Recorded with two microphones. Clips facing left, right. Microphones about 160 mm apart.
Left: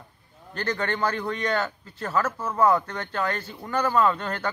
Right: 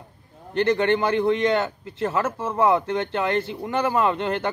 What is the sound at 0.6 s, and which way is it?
Speech, 25° right (ahead or behind).